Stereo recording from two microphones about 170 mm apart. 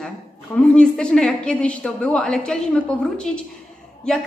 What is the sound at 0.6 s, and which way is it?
A woman's voice, 5° left (ahead or behind).